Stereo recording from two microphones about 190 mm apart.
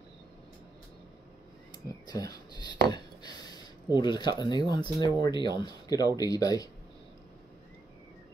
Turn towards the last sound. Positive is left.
turn(degrees=20)  # may be behind; listen again after turning